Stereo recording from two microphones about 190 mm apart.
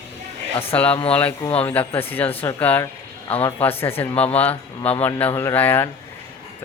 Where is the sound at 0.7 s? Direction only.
5° left (ahead or behind).